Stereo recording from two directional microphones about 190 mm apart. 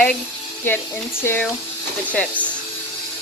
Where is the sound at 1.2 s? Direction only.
10° left (ahead or behind).